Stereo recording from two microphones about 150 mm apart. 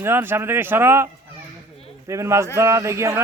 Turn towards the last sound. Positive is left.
turn(degrees=-20)  # may be behind; listen again after turning